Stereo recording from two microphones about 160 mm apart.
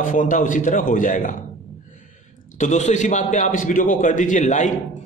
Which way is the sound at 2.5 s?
45° left (ahead or behind).